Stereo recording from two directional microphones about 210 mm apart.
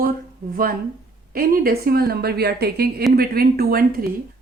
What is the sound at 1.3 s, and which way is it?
Speech, 45° right (ahead or behind).